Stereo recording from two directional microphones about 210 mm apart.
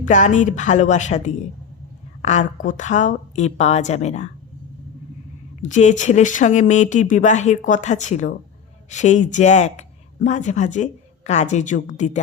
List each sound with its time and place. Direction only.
0.0 s speech: 35° left (ahead or behind)
5.6 s speech: 35° left (ahead or behind)